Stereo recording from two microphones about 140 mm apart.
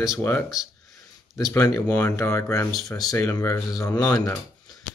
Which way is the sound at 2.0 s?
20° left (ahead or behind).